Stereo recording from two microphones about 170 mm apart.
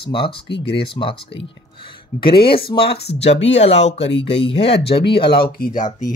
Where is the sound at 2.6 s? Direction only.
65° left (ahead or behind).